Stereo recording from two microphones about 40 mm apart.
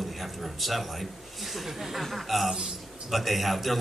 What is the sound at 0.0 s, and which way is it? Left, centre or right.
A man's voice, centre.